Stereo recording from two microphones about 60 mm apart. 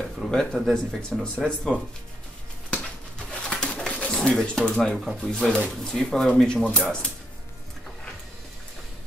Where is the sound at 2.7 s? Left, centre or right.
Centre.